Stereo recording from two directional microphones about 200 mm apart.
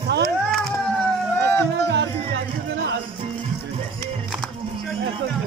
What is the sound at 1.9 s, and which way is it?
Music, 60° right (ahead or behind).